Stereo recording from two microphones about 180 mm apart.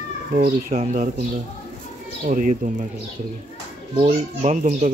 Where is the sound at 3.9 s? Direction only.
30° right (ahead or behind).